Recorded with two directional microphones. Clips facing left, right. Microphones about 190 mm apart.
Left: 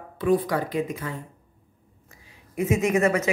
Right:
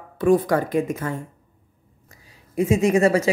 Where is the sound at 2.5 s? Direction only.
30° right (ahead or behind).